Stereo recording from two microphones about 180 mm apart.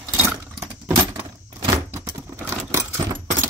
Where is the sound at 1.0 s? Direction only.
30° right (ahead or behind).